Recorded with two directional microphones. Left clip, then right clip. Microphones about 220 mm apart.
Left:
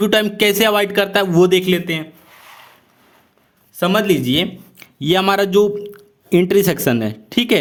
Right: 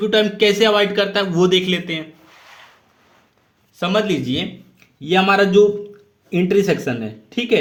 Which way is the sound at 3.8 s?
35° left (ahead or behind).